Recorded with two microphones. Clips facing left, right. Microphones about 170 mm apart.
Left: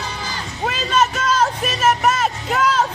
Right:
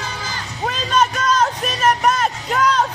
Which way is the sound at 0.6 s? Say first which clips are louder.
Even; 5° left (ahead or behind).